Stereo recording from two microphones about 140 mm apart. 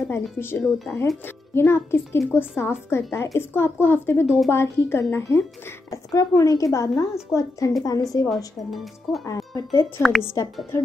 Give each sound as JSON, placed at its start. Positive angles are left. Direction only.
{"t": 0.1, "sound": "a woman's voice", "side_deg": 15}
{"t": 8.6, "sound": "speech", "side_deg": 0}
{"t": 9.2, "sound": "a woman's voice", "side_deg": 25}
{"t": 10.0, "sound": "speech", "side_deg": 0}
{"t": 10.3, "sound": "a woman's voice", "side_deg": 25}